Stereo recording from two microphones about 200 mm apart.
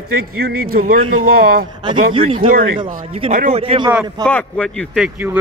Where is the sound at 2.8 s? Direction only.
30° right (ahead or behind).